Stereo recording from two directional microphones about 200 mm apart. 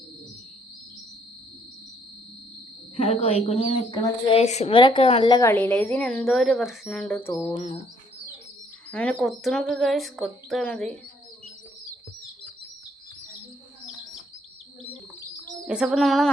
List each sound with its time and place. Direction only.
2.9 s a woman's voice: 25° left (ahead or behind); by 7.5 s 10° left (ahead or behind)
8.9 s speech: 5° left (ahead or behind)
15.6 s speech: 5° right (ahead or behind)